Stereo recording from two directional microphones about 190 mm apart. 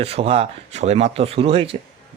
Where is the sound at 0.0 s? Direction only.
30° right (ahead or behind).